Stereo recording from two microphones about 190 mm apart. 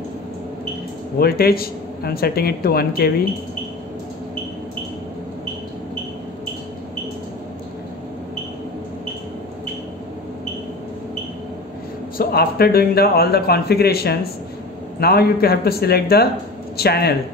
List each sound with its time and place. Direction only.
1.2 s speech: 55° left (ahead or behind)
12.2 s a man's voice: 55° left (ahead or behind)